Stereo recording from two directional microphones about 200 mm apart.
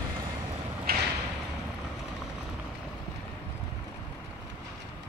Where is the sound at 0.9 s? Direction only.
50° right (ahead or behind).